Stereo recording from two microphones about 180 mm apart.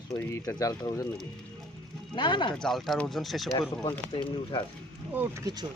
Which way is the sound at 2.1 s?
25° left (ahead or behind).